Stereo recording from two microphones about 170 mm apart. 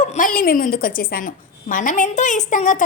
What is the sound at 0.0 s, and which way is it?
A woman's voice, 50° left (ahead or behind).